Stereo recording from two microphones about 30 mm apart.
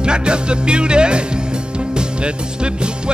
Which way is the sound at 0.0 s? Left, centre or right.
Right.